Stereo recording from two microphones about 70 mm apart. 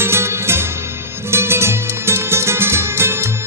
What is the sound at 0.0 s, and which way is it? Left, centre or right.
Music, right.